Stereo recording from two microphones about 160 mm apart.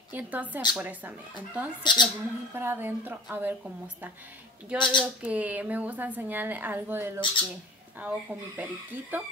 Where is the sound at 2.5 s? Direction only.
15° right (ahead or behind).